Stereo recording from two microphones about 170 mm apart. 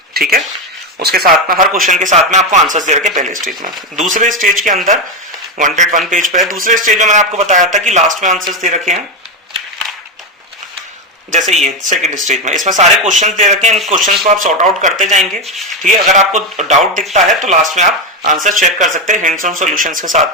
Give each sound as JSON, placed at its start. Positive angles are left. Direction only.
{"t": 0.1, "sound": "speech", "side_deg": -60}
{"t": 1.9, "sound": "speech", "side_deg": -45}
{"t": 11.3, "sound": "speech", "side_deg": -45}
{"t": 15.2, "sound": "speech", "side_deg": 0}
{"t": 15.8, "sound": "speech", "side_deg": -45}